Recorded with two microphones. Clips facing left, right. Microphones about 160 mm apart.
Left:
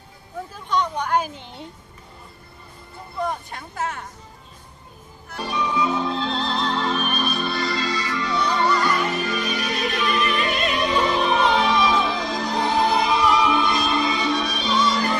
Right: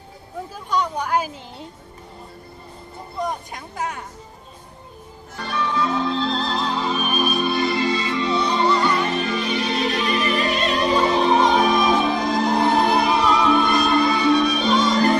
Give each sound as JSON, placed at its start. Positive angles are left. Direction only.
{"t": 0.7, "sound": "a woman's voice", "side_deg": -10}
{"t": 3.3, "sound": "speech", "side_deg": -15}
{"t": 5.4, "sound": "music", "side_deg": 15}
{"t": 9.8, "sound": "music", "side_deg": -40}
{"t": 14.1, "sound": "music", "side_deg": -45}